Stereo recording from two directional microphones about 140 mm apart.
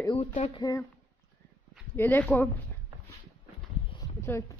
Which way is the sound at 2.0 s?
15° left (ahead or behind).